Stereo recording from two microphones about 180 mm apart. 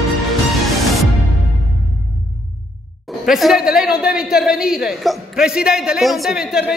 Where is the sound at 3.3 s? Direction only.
Centre (ahead or behind).